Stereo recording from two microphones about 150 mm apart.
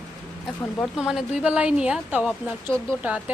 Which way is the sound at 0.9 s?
5° right (ahead or behind).